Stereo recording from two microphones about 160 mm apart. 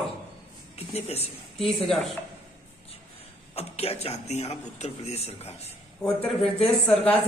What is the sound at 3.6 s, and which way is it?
A man's voice, 40° left (ahead or behind).